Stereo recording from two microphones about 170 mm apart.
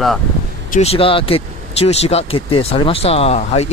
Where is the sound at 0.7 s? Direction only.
40° left (ahead or behind).